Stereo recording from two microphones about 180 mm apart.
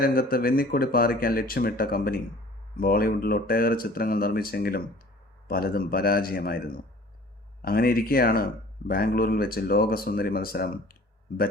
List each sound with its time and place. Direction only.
0.0 s speech: 55° left (ahead or behind)